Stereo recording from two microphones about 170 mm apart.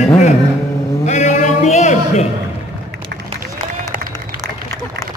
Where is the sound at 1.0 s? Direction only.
45° left (ahead or behind).